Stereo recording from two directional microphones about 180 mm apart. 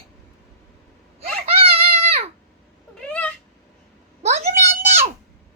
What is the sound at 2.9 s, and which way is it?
Cat, 5° left (ahead or behind).